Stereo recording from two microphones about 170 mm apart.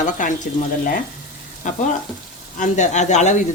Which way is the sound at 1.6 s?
45° left (ahead or behind).